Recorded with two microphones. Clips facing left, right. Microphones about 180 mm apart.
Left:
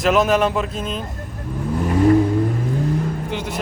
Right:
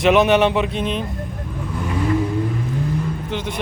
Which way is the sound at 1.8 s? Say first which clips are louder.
Left 6 dB; 40° left (ahead or behind).